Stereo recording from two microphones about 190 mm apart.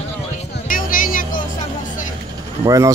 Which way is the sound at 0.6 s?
45° left (ahead or behind).